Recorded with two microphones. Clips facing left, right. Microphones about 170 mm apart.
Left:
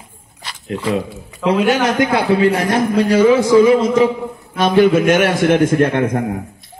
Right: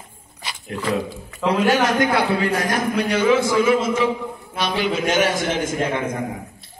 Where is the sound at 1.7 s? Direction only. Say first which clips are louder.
Left 3 dB; 20° left (ahead or behind); by 4.1 s 35° left (ahead or behind).